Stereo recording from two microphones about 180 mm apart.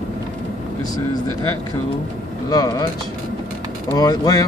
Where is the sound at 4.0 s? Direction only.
20° left (ahead or behind).